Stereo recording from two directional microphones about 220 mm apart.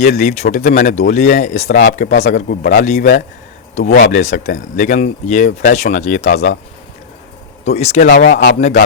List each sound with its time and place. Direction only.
0.0 s speech: 30° left (ahead or behind)
7.6 s speech: 30° left (ahead or behind)